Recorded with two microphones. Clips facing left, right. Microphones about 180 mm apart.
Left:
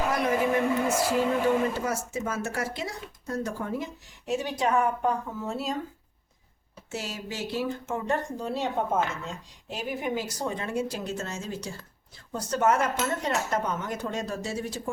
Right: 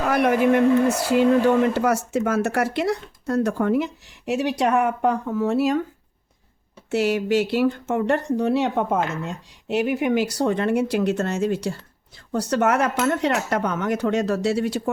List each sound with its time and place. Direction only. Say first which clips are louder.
0.1 s speech: right 10 dB; 70° right (ahead or behind)
6.9 s speech: right 15 dB; 70° right (ahead or behind)